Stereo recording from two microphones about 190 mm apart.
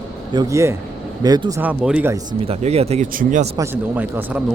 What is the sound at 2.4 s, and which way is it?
Speech, 35° right (ahead or behind).